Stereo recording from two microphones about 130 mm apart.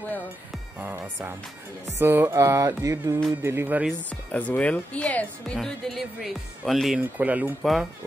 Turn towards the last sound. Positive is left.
turn(degrees=-10)  # may be behind; listen again after turning